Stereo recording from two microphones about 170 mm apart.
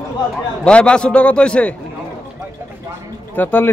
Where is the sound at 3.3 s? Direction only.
10° left (ahead or behind).